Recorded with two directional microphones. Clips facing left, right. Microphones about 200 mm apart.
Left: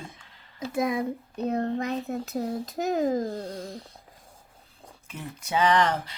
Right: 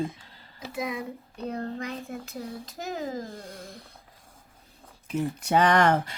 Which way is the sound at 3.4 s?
30° left (ahead or behind).